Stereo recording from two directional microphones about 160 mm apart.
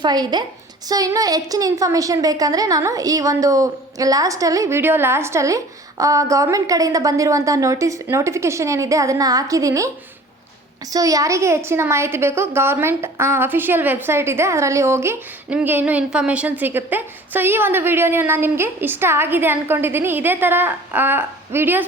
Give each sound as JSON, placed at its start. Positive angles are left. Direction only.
{"t": 0.0, "sound": "a woman's voice", "side_deg": -25}
{"t": 10.9, "sound": "a woman's voice", "side_deg": -20}